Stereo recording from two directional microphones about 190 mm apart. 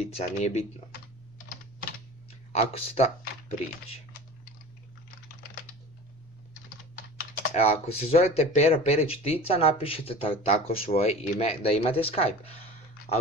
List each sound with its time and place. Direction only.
0.0 s speech: 35° left (ahead or behind)
2.5 s speech: 35° left (ahead or behind)
7.5 s speech: 35° left (ahead or behind)